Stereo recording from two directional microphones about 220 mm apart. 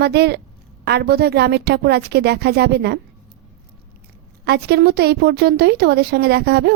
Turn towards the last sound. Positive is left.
turn(degrees=-45)  # may be behind; listen again after turning